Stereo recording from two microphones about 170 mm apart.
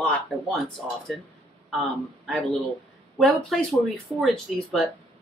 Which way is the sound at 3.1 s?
Centre (ahead or behind).